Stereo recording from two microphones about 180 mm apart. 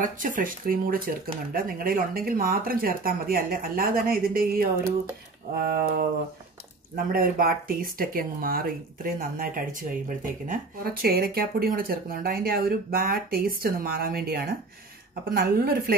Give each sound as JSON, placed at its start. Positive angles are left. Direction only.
{"t": 0.0, "sound": "speech", "side_deg": -50}
{"t": 7.1, "sound": "speech", "side_deg": -55}